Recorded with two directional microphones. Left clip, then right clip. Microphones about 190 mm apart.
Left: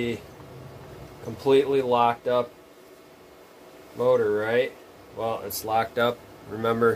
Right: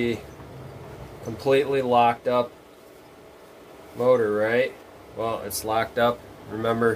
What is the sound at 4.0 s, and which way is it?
Speech, 25° left (ahead or behind).